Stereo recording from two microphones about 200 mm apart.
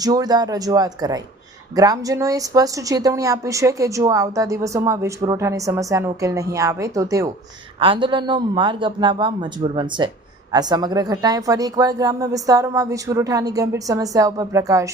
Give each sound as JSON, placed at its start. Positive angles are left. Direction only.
{"t": 0.0, "sound": "a man's voice", "side_deg": -20}